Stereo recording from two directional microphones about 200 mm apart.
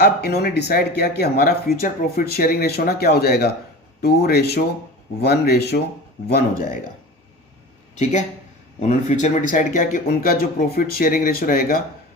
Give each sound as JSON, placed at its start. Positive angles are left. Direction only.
{"t": 0.0, "sound": "speech", "side_deg": 55}
{"t": 8.8, "sound": "speech", "side_deg": 35}